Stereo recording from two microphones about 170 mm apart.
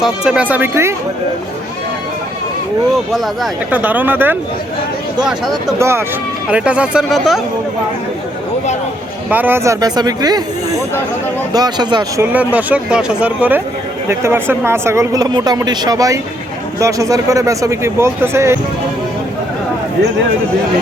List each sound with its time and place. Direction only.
0.0 s speech: 5° right (ahead or behind)
3.1 s speech: centre (ahead or behind)
3.7 s speech: 10° right (ahead or behind)
5.8 s speech: 15° right (ahead or behind)
9.3 s speech: 10° right (ahead or behind)
12.2 s speech: 10° right (ahead or behind)